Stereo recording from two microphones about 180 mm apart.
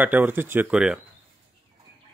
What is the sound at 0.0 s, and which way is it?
Speech, 10° right (ahead or behind).